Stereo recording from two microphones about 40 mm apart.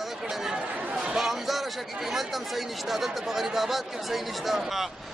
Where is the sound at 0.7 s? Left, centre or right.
Right.